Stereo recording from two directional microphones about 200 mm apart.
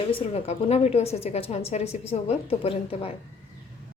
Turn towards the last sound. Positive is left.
turn(degrees=30)  # may be behind; listen again after turning